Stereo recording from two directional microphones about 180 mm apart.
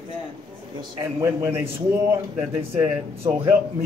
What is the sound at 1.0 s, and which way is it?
Speech, 15° right (ahead or behind).